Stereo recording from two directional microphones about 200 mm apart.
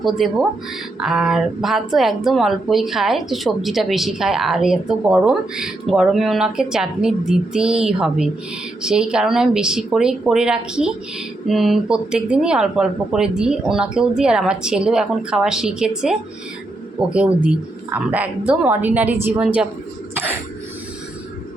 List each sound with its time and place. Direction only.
0.0 s speech: centre (ahead or behind)